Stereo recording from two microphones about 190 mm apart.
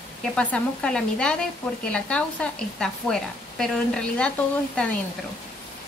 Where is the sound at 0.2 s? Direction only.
5° left (ahead or behind).